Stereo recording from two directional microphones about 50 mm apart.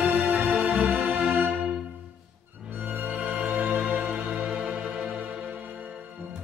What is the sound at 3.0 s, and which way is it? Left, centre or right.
Music, right.